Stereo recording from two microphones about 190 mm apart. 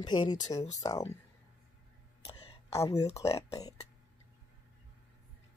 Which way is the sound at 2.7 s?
15° left (ahead or behind).